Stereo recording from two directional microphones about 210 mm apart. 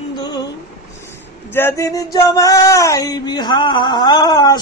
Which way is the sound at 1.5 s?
10° left (ahead or behind).